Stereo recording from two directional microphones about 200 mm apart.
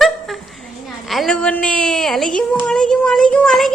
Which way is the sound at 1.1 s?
Centre (ahead or behind).